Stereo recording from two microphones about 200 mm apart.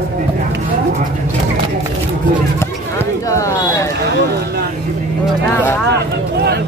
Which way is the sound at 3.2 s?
15° left (ahead or behind).